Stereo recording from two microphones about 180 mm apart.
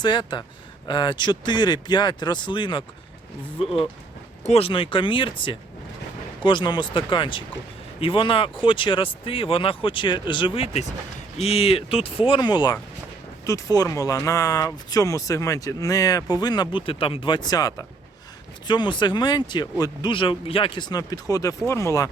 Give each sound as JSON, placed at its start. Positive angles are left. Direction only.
{"t": 0.0, "sound": "speech", "side_deg": 25}
{"t": 4.4, "sound": "speech", "side_deg": 35}